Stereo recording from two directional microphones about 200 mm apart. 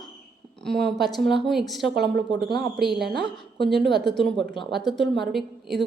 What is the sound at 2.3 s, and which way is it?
Speech, 55° right (ahead or behind).